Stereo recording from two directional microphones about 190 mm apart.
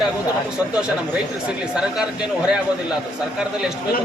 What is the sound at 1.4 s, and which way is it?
Speech, 5° right (ahead or behind).